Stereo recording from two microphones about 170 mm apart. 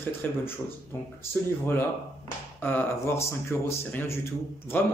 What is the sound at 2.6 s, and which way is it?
Speech, 10° left (ahead or behind).